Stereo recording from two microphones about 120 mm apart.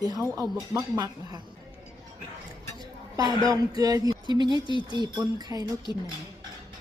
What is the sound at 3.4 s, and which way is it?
Speech, 30° right (ahead or behind).